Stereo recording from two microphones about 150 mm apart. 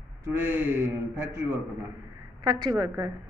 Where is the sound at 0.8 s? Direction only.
20° right (ahead or behind).